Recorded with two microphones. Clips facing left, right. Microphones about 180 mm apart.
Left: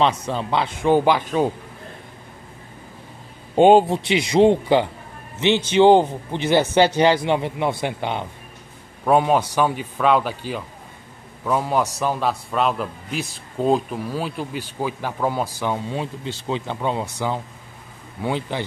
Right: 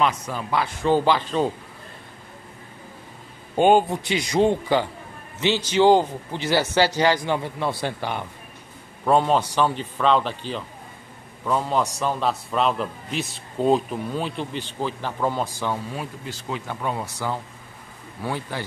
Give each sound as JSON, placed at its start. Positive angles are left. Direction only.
{"t": 0.0, "sound": "a man's voice", "side_deg": 25}
{"t": 3.5, "sound": "a man's voice", "side_deg": 25}
{"t": 15.6, "sound": "speech", "side_deg": 20}